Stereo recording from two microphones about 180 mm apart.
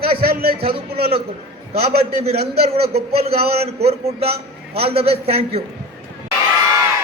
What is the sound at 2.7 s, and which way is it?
Speech, 35° right (ahead or behind).